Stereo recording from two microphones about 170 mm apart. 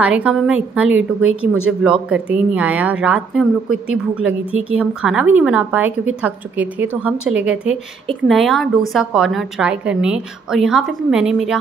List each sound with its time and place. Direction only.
0.0 s a woman's voice: 5° right (ahead or behind)